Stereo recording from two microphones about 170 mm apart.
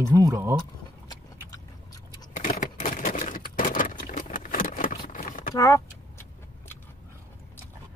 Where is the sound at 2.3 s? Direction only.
45° left (ahead or behind).